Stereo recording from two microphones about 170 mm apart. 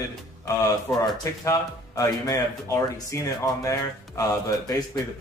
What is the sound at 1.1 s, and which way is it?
A man's voice, 20° left (ahead or behind).